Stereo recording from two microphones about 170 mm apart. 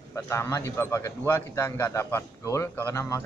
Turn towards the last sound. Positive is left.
turn(degrees=15)  # may be behind; listen again after turning